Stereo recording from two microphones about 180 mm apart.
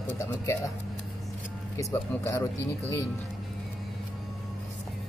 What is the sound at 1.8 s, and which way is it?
Speech, 15° left (ahead or behind).